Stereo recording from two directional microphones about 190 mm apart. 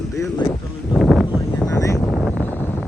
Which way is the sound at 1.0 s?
Centre (ahead or behind).